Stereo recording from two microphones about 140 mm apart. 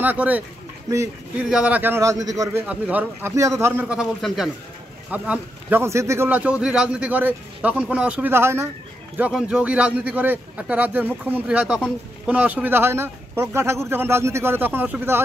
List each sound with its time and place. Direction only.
0.0 s a man's voice: 10° right (ahead or behind)
1.5 s a man's voice: 10° right (ahead or behind); by 2.6 s 25° right (ahead or behind)
2.6 s a man's voice: 10° right (ahead or behind)
3.8 s a man's voice: 5° right (ahead or behind)
9.2 s a man's voice: 5° right (ahead or behind)